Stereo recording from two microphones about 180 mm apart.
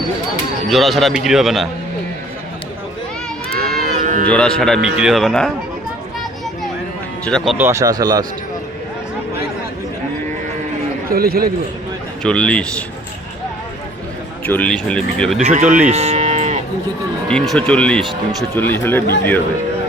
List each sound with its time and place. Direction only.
0.7 s speech: centre (ahead or behind)
3.6 s livestock: 55° right (ahead or behind)
3.9 s music: 45° right (ahead or behind)
4.3 s speech: 5° left (ahead or behind)
7.3 s speech: 5° left (ahead or behind)
7.6 s speech: 15° right (ahead or behind)
11.1 s a man's voice: 55° right (ahead or behind)
12.2 s speech: 5° left (ahead or behind)
14.4 s speech: 10° left (ahead or behind)
15.4 s speech: 40° right (ahead or behind)
15.9 s moo: 35° right (ahead or behind)
17.2 s speech: 5° left (ahead or behind)